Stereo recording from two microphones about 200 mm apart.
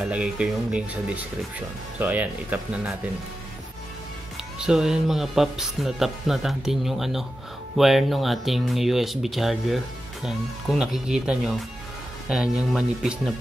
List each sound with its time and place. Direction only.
0.0 s speech: 5° right (ahead or behind)
4.6 s speech: 5° right (ahead or behind)